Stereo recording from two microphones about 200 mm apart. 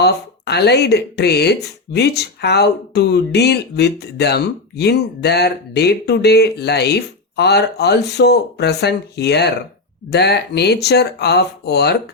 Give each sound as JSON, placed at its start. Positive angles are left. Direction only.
{"t": 0.0, "sound": "speech", "side_deg": 55}